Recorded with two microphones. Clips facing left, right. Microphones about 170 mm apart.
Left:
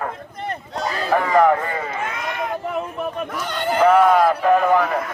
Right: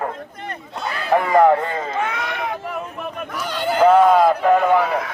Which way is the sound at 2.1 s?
70° right (ahead or behind).